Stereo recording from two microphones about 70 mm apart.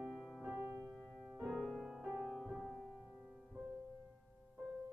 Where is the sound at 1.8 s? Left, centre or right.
Centre.